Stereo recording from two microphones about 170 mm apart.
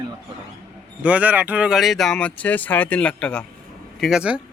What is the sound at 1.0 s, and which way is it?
Speech, 10° right (ahead or behind).